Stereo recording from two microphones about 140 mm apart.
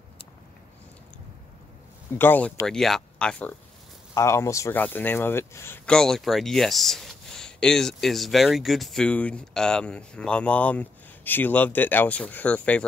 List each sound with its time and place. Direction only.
2.1 s speech: 15° left (ahead or behind)
4.1 s speech: 20° left (ahead or behind)
5.9 s speech: 5° left (ahead or behind)